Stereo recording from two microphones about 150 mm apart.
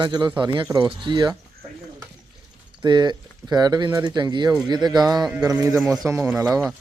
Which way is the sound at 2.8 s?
30° right (ahead or behind).